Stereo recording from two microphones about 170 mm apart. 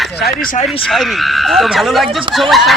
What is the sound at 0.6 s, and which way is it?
Speech, centre (ahead or behind).